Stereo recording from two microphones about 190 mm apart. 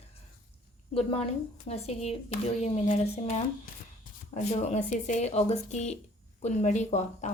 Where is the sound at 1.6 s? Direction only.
35° left (ahead or behind).